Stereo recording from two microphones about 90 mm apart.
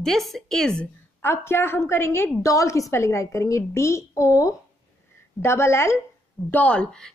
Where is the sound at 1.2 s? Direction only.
25° left (ahead or behind).